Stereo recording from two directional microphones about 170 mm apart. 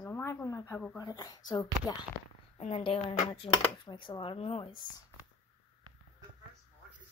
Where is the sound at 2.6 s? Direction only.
35° left (ahead or behind).